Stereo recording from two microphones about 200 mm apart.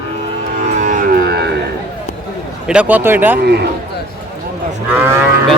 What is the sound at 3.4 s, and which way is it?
Speech, 55° right (ahead or behind).